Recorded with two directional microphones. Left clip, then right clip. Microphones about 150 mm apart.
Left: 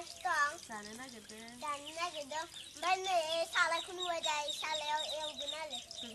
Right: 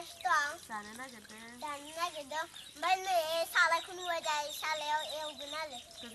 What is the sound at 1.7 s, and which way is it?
A child's voice, 25° right (ahead or behind).